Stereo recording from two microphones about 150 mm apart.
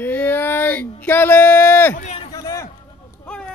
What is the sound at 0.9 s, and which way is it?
Speech, 15° left (ahead or behind).